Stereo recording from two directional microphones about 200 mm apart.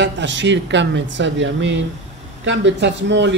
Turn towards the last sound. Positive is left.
turn(degrees=-60)  # may be behind; listen again after turning